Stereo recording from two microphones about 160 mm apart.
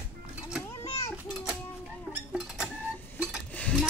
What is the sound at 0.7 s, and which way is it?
Children playing, 20° left (ahead or behind).